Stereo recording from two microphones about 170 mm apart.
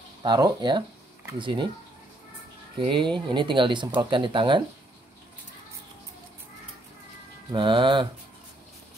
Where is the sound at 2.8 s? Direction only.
30° right (ahead or behind).